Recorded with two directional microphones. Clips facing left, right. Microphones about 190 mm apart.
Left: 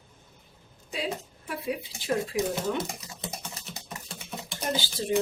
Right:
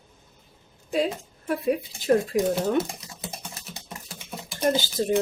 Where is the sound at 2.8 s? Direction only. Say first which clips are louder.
Right 7 dB; centre (ahead or behind).